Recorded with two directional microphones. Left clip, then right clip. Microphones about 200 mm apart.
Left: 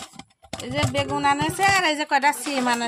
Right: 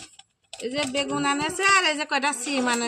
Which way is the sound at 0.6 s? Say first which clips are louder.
Left 2 dB; 55° left (ahead or behind).